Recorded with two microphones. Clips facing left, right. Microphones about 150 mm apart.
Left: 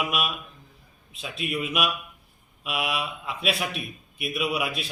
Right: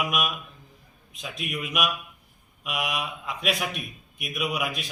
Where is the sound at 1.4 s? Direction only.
5° left (ahead or behind).